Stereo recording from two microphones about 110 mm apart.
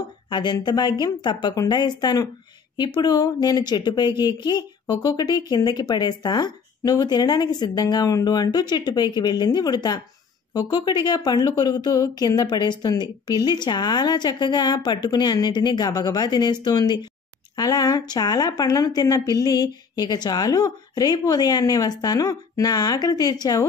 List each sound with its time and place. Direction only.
0.3 s speech: 45° left (ahead or behind)